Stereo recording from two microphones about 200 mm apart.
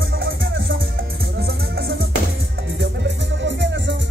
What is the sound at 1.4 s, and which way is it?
Music, 50° right (ahead or behind).